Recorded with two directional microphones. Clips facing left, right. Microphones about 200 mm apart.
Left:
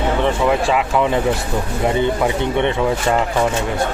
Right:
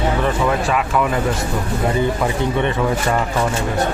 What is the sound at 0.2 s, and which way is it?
Speech, 20° left (ahead or behind).